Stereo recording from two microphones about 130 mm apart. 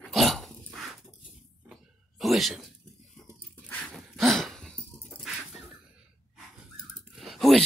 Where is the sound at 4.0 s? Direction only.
Centre (ahead or behind).